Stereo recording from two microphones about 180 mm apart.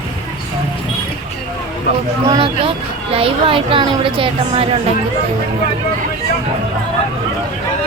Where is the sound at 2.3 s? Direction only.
30° right (ahead or behind).